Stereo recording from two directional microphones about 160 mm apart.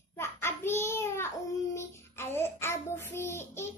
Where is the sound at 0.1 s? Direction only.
15° left (ahead or behind).